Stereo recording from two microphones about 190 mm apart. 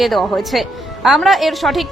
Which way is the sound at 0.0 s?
Centre (ahead or behind).